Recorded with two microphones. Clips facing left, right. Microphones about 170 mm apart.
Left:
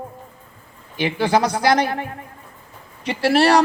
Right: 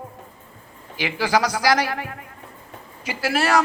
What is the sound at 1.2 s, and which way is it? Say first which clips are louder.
Speech: left 2 dB; 30° left (ahead or behind).